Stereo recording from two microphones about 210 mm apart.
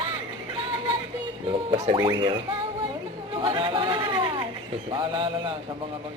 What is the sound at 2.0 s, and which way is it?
Speech, 20° right (ahead or behind).